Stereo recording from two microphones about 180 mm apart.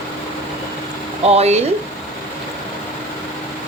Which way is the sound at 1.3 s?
35° right (ahead or behind).